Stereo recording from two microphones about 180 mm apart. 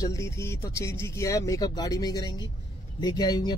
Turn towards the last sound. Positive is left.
turn(degrees=25)  # may be behind; listen again after turning